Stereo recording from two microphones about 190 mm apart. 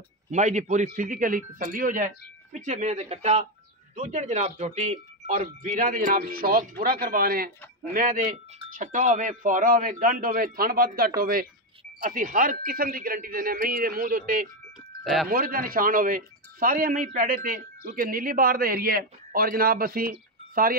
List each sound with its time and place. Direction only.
0.3 s a man's voice: 40° right (ahead or behind)